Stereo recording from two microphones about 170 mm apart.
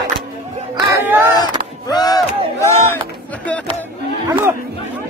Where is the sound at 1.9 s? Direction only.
25° left (ahead or behind).